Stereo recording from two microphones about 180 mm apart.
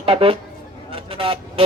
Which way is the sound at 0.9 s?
30° right (ahead or behind).